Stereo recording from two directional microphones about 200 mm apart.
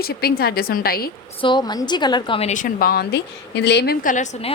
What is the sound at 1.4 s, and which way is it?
A woman's voice, 20° left (ahead or behind).